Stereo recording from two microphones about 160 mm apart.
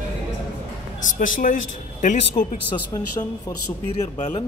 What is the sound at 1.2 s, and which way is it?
Speech, 55° left (ahead or behind).